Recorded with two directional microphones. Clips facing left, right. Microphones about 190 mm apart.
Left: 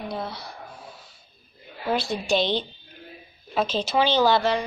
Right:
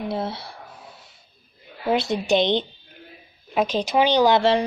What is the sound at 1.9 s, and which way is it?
A woman's voice, 20° right (ahead or behind).